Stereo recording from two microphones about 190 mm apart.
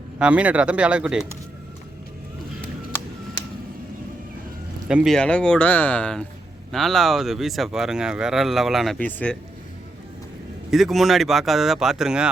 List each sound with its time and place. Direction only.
0.2 s speech: 5° right (ahead or behind)
4.9 s speech: 5° right (ahead or behind)
10.7 s speech: centre (ahead or behind)